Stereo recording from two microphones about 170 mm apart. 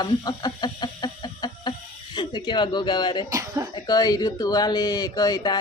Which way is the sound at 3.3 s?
20° right (ahead or behind).